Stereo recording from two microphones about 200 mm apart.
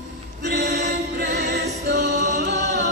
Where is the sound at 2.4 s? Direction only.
60° right (ahead or behind).